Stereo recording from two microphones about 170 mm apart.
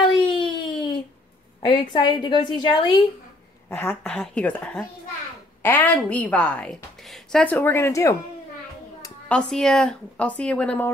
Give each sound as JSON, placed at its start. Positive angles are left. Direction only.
{"t": 0.0, "sound": "a sound", "side_deg": 30}
{"t": 1.6, "sound": "a woman's voice", "side_deg": 25}
{"t": 4.0, "sound": "a woman's voice", "side_deg": 5}
{"t": 9.3, "sound": "speech", "side_deg": 5}